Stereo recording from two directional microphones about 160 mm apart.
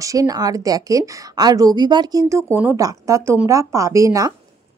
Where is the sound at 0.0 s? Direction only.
20° right (ahead or behind).